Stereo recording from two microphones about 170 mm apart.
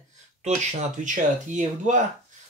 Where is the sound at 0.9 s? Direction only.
50° right (ahead or behind).